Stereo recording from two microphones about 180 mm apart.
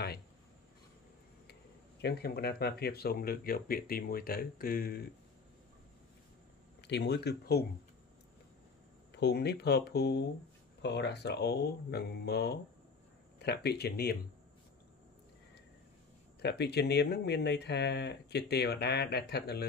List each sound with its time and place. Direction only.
1.5 s speech: 65° left (ahead or behind)
6.8 s speech: 70° left (ahead or behind)
9.1 s speech: 65° left (ahead or behind)
16.3 s speech: 65° left (ahead or behind)